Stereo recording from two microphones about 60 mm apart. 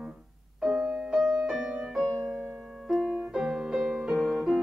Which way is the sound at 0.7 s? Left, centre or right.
Centre.